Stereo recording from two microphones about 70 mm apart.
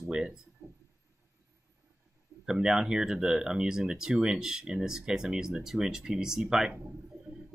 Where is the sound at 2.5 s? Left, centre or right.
Centre.